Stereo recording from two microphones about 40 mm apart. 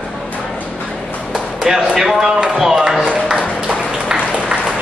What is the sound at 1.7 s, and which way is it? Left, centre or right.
Speech, centre.